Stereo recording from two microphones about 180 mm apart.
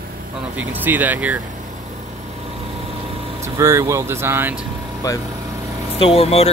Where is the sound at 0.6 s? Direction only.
10° right (ahead or behind).